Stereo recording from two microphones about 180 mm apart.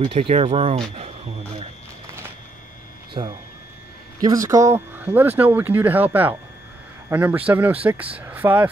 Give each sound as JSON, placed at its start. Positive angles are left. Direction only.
{"t": 0.1, "sound": "speech", "side_deg": -30}
{"t": 0.9, "sound": "a sound", "side_deg": -35}
{"t": 3.2, "sound": "speech", "side_deg": -40}
{"t": 4.2, "sound": "speech", "side_deg": -20}